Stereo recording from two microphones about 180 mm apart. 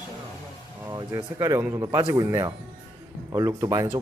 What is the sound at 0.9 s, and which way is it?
Speech, 15° right (ahead or behind).